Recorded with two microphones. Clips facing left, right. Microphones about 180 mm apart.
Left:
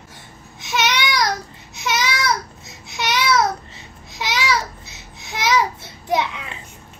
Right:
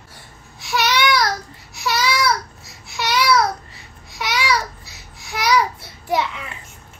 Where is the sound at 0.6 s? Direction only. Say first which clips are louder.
Right 2 dB; 20° left (ahead or behind).